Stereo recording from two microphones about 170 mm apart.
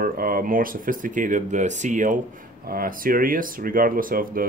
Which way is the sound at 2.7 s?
60° right (ahead or behind).